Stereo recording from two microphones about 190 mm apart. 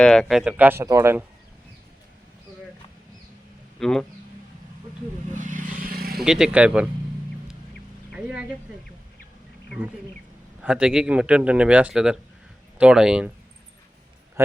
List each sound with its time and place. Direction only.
0.0 s speech: 5° left (ahead or behind); by 1.2 s 15° right (ahead or behind)
3.8 s a man's voice: centre (ahead or behind)
5.3 s vehicle: 40° right (ahead or behind)
6.1 s a man's voice: 5° right (ahead or behind)
8.1 s speech: 5° right (ahead or behind)
10.6 s a man's voice: 5° right (ahead or behind)
14.4 s speech: 15° right (ahead or behind)